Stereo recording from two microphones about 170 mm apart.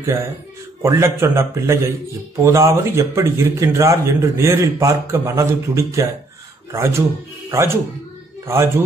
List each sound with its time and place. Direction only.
0.0 s speech: 15° right (ahead or behind)